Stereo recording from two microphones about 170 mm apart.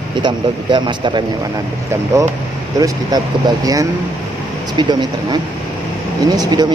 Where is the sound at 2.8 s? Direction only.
20° right (ahead or behind).